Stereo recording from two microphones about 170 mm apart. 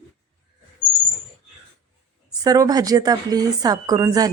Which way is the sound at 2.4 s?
20° right (ahead or behind).